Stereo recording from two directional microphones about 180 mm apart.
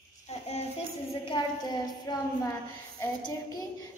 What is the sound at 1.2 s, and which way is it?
Speech, 25° left (ahead or behind).